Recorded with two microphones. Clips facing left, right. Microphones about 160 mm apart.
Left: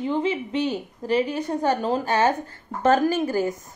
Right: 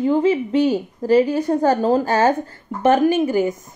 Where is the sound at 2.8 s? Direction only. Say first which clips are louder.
Right 4 dB; 20° right (ahead or behind).